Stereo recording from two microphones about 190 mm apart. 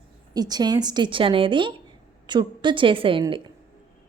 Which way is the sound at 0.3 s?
20° right (ahead or behind).